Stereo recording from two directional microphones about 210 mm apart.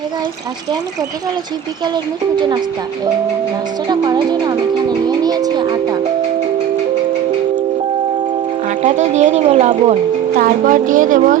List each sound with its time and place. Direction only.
2.3 s speech: 20° right (ahead or behind)
3.8 s speech: 20° right (ahead or behind)
8.8 s a woman's voice: 35° right (ahead or behind)